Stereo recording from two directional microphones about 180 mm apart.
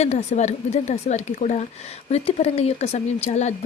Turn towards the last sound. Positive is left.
turn(degrees=40)  # may be behind; listen again after turning